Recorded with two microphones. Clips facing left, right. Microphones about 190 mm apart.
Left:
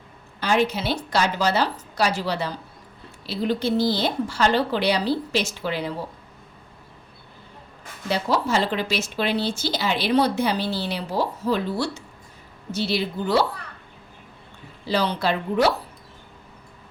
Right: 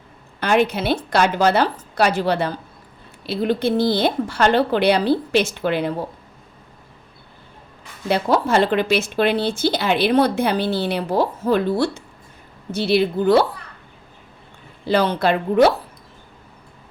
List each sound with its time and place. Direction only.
0.3 s speech: 60° right (ahead or behind)
8.0 s speech: 55° right (ahead or behind)
14.8 s speech: 55° right (ahead or behind)